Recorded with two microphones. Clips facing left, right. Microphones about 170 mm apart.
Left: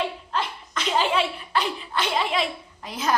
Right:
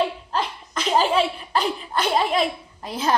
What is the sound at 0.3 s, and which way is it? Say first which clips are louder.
Laughter: right 2 dB; 40° right (ahead or behind).